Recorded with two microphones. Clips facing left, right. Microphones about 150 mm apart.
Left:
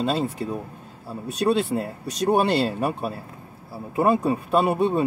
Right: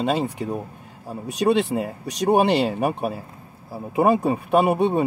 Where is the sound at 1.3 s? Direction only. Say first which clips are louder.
Right 2 dB; 75° right (ahead or behind).